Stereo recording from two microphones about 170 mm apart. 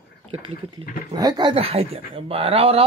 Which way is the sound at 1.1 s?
25° right (ahead or behind).